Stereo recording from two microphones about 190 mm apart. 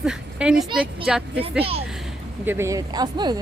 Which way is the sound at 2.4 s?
15° right (ahead or behind).